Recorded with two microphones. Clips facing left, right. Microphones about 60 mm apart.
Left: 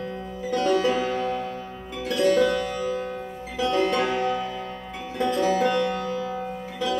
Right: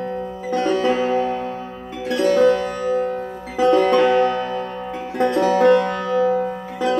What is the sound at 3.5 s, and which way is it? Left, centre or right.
Music, right.